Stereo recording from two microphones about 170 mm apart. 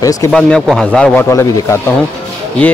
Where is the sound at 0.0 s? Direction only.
20° left (ahead or behind).